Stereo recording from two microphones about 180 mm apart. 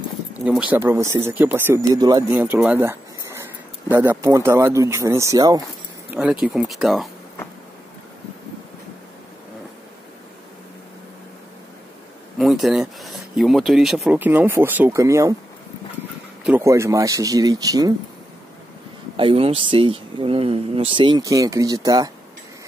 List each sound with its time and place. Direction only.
0.5 s speech: 5° right (ahead or behind)
6.0 s speech: 5° right (ahead or behind)
12.4 s speech: centre (ahead or behind); by 15.3 s 15° right (ahead or behind)
16.4 s speech: 15° right (ahead or behind)
19.1 s speech: 30° right (ahead or behind)